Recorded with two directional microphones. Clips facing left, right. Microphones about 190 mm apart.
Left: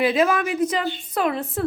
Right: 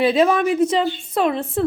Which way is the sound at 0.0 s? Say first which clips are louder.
Right 3 dB; 30° right (ahead or behind).